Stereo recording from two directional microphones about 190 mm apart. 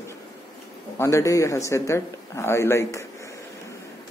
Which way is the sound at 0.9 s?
15° left (ahead or behind).